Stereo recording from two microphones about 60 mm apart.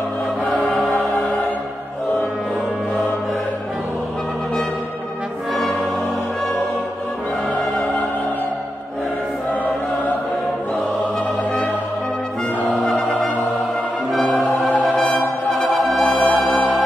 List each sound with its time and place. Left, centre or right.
0.5 s choir: centre
12.8 s music: centre
16.0 s music: centre